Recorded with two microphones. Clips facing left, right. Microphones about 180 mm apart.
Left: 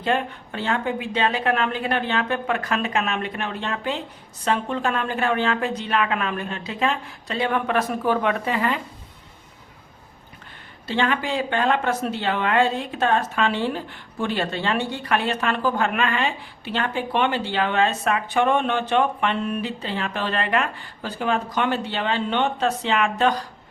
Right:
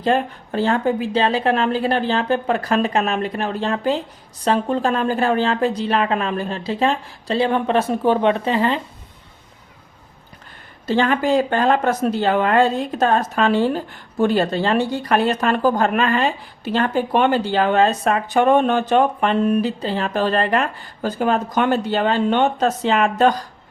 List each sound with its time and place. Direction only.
0.0 s speech: 40° right (ahead or behind)
10.8 s speech: 40° right (ahead or behind)